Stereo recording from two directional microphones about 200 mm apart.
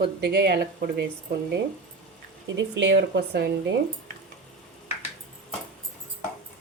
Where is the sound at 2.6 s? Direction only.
65° right (ahead or behind).